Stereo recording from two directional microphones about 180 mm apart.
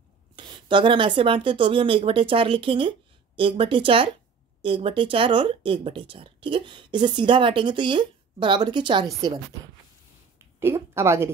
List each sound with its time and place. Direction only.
0.4 s speech: 25° right (ahead or behind)
10.6 s a woman's voice: 15° right (ahead or behind)